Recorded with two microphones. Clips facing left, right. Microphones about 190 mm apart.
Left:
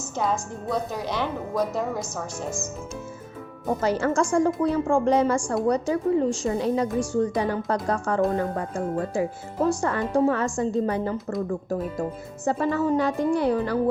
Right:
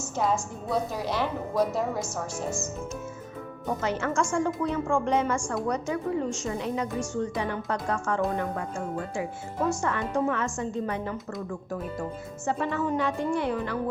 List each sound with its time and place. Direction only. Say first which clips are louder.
0.2 s a woman's voice: left 1 dB; 5° right (ahead or behind)
3.8 s speech: left 5 dB; 35° left (ahead or behind)